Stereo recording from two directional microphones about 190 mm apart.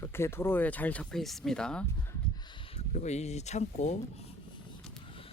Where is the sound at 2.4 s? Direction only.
25° left (ahead or behind).